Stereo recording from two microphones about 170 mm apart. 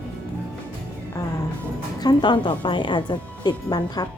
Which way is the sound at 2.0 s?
25° left (ahead or behind).